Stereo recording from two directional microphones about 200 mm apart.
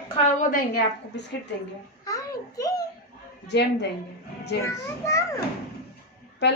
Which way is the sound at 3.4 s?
60° left (ahead or behind).